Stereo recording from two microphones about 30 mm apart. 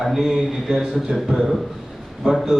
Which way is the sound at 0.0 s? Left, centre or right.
Centre.